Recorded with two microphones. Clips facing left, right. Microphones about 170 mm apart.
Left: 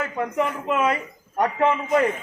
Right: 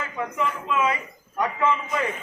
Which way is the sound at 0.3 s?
55° left (ahead or behind).